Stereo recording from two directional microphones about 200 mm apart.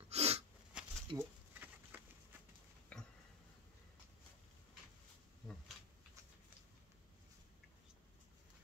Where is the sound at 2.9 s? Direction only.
5° left (ahead or behind).